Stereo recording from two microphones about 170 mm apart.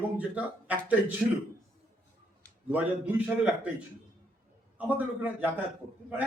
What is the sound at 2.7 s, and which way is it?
A man's voice, 10° right (ahead or behind).